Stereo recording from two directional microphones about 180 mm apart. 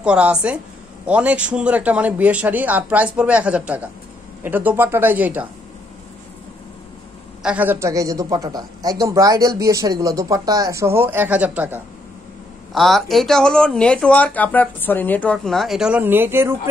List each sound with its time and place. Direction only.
0.0 s a man's voice: 5° right (ahead or behind)
7.4 s a man's voice: 10° right (ahead or behind)